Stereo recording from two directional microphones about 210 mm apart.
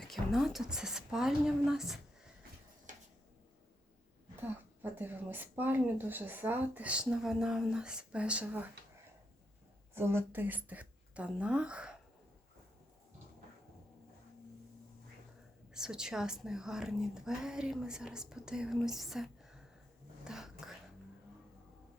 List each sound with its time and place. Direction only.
0.0 s speech: centre (ahead or behind)
2.9 s a sound: 35° right (ahead or behind)
4.4 s speech: 10° right (ahead or behind)
9.9 s speech: 10° right (ahead or behind)
15.7 s speech: 5° right (ahead or behind)
20.2 s whispering: centre (ahead or behind)